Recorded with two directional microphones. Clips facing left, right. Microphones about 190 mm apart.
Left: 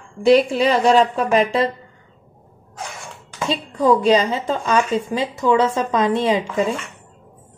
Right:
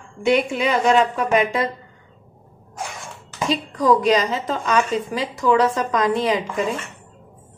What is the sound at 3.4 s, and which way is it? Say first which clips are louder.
A woman's voice: left 1 dB; 30° left (ahead or behind).